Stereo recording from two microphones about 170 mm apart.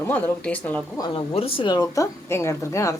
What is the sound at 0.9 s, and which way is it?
A woman's voice, 25° left (ahead or behind).